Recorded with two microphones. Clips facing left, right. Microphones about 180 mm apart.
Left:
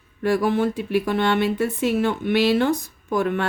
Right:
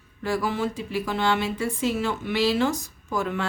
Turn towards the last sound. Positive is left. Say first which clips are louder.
# left 5 dB
turn(degrees=55)  # may be behind; listen again after turning